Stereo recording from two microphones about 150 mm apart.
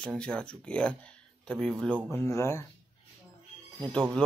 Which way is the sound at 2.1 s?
15° left (ahead or behind).